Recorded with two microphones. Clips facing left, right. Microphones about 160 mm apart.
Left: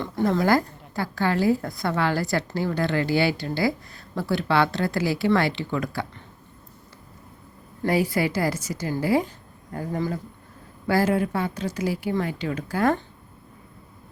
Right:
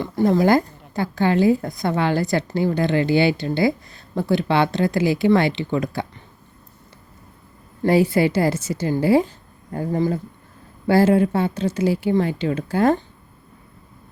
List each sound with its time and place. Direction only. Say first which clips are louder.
0.3 s a woman's voice: right 4 dB; 20° right (ahead or behind)
7.9 s a woman's voice: right 6 dB; 25° right (ahead or behind)